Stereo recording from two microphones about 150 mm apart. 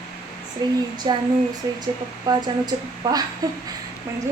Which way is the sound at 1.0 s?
30° right (ahead or behind).